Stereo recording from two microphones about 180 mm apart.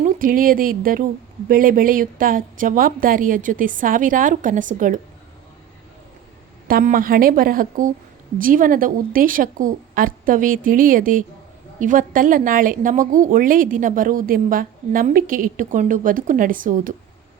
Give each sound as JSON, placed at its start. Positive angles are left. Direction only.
{"t": 0.0, "sound": "speech", "side_deg": -50}
{"t": 6.7, "sound": "speech", "side_deg": -50}